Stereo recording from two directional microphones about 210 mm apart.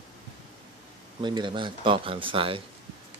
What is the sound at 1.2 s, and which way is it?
Speech, 20° right (ahead or behind).